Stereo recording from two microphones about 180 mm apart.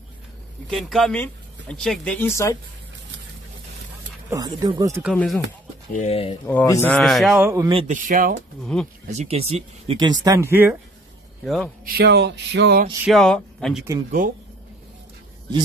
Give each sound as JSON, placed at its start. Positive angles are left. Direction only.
{"t": 0.7, "sound": "speech", "side_deg": 0}
{"t": 4.3, "sound": "speech", "side_deg": -20}
{"t": 5.0, "sound": "speech", "side_deg": 0}
{"t": 5.9, "sound": "speech", "side_deg": 35}
{"t": 6.4, "sound": "speech", "side_deg": 15}
{"t": 7.0, "sound": "speech", "side_deg": 0}
{"t": 7.4, "sound": "speech", "side_deg": -20}
{"t": 7.8, "sound": "speech", "side_deg": -45}
{"t": 8.7, "sound": "speech", "side_deg": 5}
{"t": 9.0, "sound": "speech", "side_deg": -40}
{"t": 11.4, "sound": "speech", "side_deg": 0}
{"t": 11.8, "sound": "a sound", "side_deg": -60}
{"t": 13.0, "sound": "speech", "side_deg": 0}